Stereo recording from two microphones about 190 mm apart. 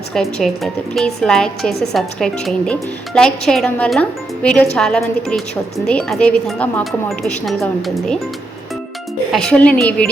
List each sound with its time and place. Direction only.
0.1 s a woman's voice: centre (ahead or behind)
9.3 s a woman's voice: 5° left (ahead or behind)